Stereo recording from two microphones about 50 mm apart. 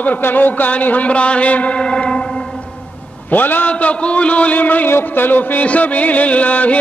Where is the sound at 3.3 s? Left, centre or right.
Left.